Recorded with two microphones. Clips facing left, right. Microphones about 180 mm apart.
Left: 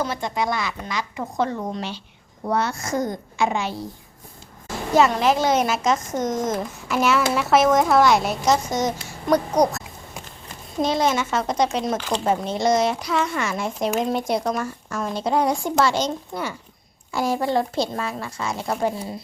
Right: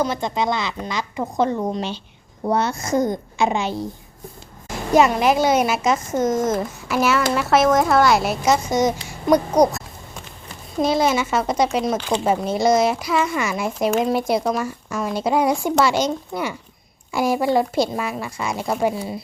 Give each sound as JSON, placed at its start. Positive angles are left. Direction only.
{"t": 0.0, "sound": "a woman's voice", "side_deg": -20}
{"t": 4.9, "sound": "speech", "side_deg": -15}